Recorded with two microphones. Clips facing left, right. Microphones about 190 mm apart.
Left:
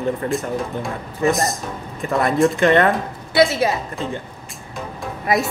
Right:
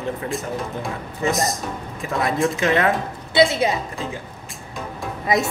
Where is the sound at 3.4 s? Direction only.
20° right (ahead or behind).